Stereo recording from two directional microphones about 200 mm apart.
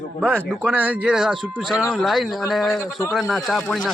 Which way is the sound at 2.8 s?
15° left (ahead or behind).